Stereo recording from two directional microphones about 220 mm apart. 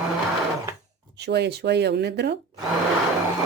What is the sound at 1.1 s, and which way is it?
Speech, 50° right (ahead or behind).